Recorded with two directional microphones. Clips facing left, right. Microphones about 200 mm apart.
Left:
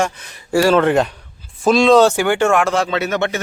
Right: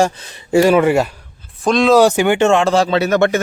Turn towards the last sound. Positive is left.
turn(degrees=-45)  # may be behind; listen again after turning